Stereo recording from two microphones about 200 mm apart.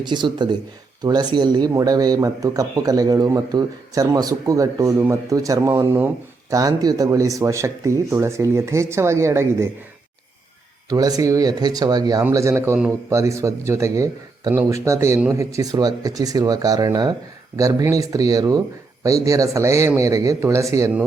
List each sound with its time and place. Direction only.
0.0 s speech: 20° right (ahead or behind)
10.8 s speech: 20° right (ahead or behind)